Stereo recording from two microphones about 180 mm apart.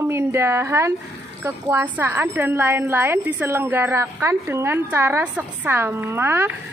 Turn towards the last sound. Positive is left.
turn(degrees=-15)  # may be behind; listen again after turning